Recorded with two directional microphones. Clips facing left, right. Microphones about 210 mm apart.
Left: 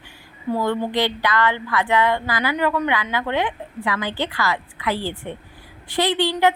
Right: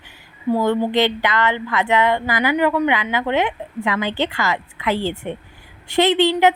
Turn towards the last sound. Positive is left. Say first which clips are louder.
# right 4 dB
turn(degrees=-20)  # may be behind; listen again after turning